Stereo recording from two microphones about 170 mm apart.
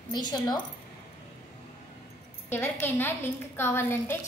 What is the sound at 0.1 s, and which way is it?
Speech, 25° left (ahead or behind).